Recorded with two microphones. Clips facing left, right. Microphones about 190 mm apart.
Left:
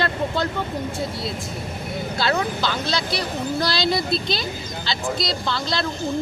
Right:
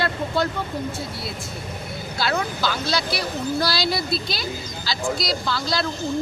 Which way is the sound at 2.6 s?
20° left (ahead or behind).